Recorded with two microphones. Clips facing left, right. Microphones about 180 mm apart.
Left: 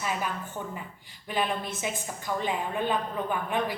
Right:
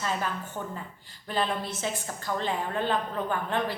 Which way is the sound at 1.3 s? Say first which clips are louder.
Even; 15° left (ahead or behind).